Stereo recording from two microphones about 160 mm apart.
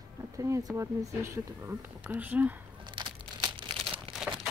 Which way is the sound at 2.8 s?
30° right (ahead or behind).